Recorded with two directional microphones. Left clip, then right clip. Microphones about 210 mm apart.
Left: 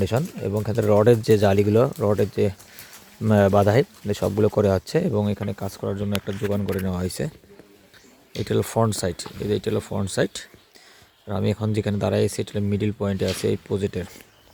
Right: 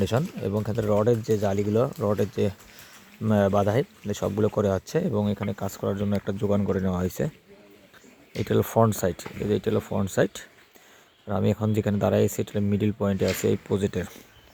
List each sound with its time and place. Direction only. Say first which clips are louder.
0.0 s speech: left 2 dB; 10° left (ahead or behind)
8.3 s speech: even; 10° left (ahead or behind)